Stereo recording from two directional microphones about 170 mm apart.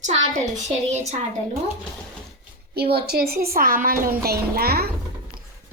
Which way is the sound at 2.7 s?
70° right (ahead or behind).